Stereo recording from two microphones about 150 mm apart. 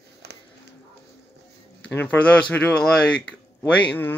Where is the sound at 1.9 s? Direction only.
10° left (ahead or behind).